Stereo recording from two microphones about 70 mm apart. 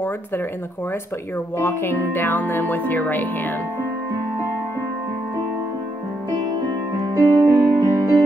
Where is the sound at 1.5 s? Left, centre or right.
Left.